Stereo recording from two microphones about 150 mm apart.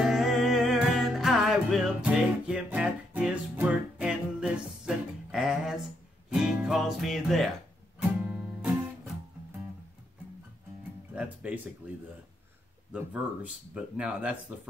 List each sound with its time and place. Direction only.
0.0 s music: centre (ahead or behind)
10.8 s music: 10° right (ahead or behind)
13.7 s speech: 5° right (ahead or behind)